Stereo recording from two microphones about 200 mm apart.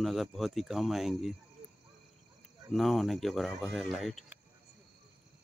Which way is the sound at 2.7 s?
Centre (ahead or behind).